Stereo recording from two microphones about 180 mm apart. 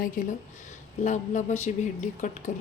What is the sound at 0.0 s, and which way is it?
A woman's voice, 45° left (ahead or behind).